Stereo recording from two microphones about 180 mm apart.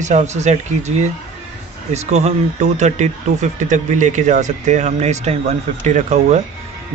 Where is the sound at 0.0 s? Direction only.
40° right (ahead or behind).